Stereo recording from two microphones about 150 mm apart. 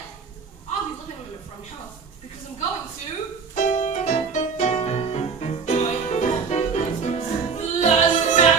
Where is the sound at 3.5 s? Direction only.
50° left (ahead or behind).